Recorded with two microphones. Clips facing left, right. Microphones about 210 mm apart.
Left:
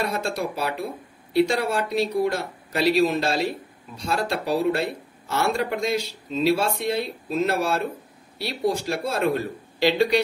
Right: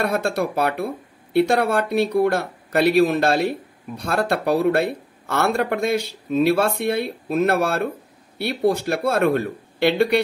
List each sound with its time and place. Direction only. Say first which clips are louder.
0.0 s speech: right 5 dB; 60° right (ahead or behind)